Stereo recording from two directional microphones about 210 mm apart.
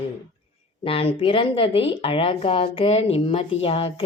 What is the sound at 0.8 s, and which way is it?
Speech, 25° left (ahead or behind).